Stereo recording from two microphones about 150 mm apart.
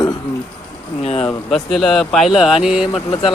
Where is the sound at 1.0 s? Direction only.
40° left (ahead or behind).